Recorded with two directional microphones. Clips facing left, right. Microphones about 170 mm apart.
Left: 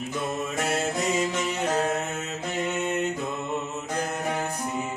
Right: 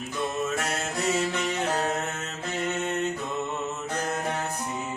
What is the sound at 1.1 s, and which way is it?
Music, 15° left (ahead or behind).